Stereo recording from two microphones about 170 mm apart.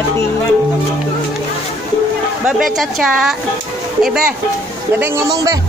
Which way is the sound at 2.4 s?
Centre (ahead or behind).